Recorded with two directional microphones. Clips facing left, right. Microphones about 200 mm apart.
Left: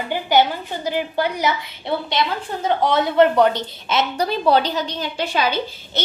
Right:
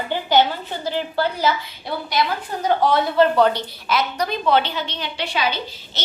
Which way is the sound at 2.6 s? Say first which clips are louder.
Even; 20° left (ahead or behind).